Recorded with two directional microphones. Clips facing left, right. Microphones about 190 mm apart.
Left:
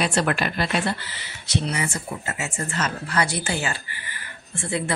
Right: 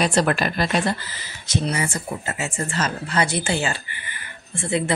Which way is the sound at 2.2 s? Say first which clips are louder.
Right 2 dB; 30° right (ahead or behind).